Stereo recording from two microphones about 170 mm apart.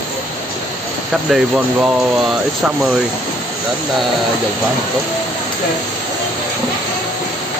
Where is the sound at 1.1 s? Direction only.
Centre (ahead or behind).